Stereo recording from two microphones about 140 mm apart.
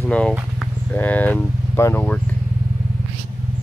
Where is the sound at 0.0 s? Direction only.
10° left (ahead or behind).